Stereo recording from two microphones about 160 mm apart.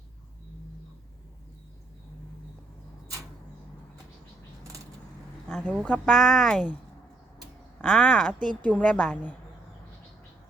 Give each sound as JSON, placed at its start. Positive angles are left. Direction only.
{"t": 5.5, "sound": "a woman's voice", "side_deg": 5}
{"t": 7.8, "sound": "a woman's voice", "side_deg": 5}